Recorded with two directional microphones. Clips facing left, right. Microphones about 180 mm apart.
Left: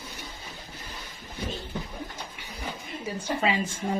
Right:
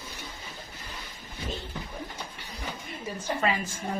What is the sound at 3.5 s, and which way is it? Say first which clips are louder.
Speech: left 3 dB; 25° left (ahead or behind).